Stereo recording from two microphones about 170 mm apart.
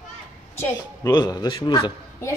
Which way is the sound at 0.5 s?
15° left (ahead or behind).